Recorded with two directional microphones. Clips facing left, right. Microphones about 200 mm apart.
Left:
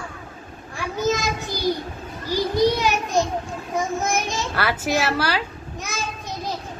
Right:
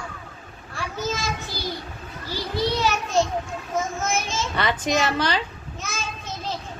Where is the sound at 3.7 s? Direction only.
15° left (ahead or behind).